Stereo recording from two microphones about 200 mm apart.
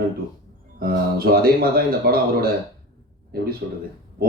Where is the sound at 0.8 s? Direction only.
50° right (ahead or behind).